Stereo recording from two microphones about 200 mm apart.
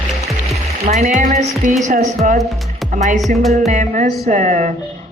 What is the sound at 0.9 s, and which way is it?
Speech, 35° right (ahead or behind).